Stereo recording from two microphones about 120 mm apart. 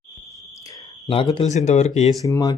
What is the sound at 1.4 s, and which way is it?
Speech, 70° left (ahead or behind).